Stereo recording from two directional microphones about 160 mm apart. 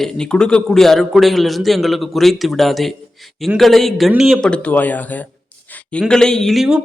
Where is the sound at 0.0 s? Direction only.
5° left (ahead or behind).